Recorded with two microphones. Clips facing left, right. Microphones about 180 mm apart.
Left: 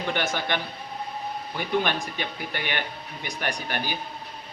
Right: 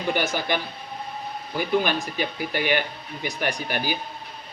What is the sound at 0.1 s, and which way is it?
Speech, 5° right (ahead or behind).